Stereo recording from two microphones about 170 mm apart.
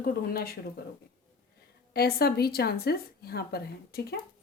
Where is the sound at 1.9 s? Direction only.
65° left (ahead or behind).